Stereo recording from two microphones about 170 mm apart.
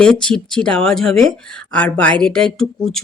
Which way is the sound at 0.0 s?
5° left (ahead or behind).